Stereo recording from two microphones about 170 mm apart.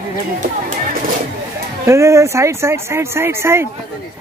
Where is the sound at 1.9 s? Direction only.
15° right (ahead or behind).